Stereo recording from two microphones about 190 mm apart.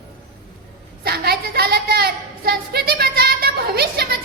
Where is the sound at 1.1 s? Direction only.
55° right (ahead or behind).